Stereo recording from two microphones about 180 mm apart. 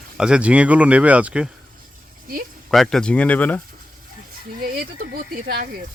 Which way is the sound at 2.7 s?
Centre (ahead or behind).